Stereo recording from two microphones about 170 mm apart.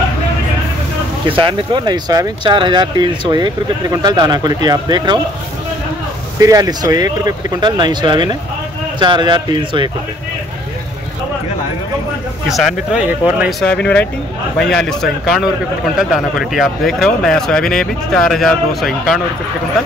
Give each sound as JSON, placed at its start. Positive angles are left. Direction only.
{"t": 1.3, "sound": "speech", "side_deg": -30}
{"t": 6.4, "sound": "speech", "side_deg": -20}
{"t": 12.4, "sound": "speech", "side_deg": 0}